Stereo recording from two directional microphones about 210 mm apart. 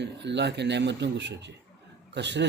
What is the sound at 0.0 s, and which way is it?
Speech, 55° right (ahead or behind).